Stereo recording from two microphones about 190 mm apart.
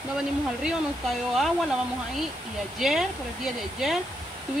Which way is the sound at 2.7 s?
Centre (ahead or behind).